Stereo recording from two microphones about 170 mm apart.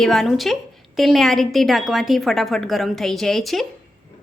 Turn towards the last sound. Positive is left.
turn(degrees=0)  # may be behind; listen again after turning